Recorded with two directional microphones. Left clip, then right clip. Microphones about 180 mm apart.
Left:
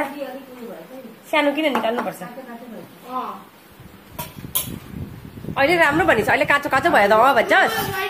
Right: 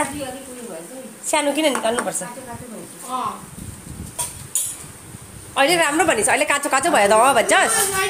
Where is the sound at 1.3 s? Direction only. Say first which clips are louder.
Even; 15° right (ahead or behind).